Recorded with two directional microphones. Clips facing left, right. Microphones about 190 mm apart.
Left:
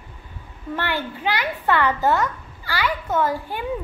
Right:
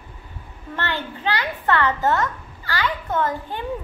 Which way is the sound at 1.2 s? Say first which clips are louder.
Even; 15° left (ahead or behind).